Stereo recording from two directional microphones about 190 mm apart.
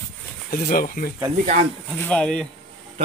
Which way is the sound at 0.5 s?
50° left (ahead or behind).